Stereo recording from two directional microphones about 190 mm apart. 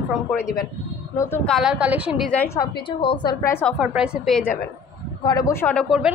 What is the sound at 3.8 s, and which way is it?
Speech, 5° right (ahead or behind).